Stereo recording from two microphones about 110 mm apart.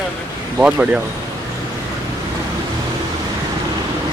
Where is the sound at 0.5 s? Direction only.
10° right (ahead or behind).